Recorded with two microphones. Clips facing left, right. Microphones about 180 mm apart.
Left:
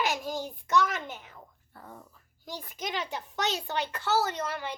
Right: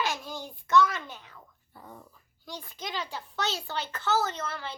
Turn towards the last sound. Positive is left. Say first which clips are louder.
# left 3 dB
turn(degrees=15)  # may be behind; listen again after turning